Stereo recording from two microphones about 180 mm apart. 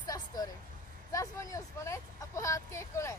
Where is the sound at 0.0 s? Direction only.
20° left (ahead or behind).